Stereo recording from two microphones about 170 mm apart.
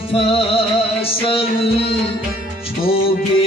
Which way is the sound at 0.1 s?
35° left (ahead or behind).